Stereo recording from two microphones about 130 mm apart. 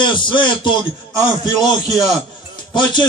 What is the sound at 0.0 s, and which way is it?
Speech, 40° left (ahead or behind).